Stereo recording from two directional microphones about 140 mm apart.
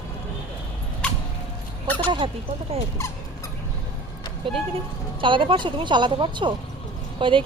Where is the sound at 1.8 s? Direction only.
10° left (ahead or behind).